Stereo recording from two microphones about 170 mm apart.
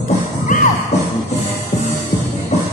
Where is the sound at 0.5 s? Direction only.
45° left (ahead or behind).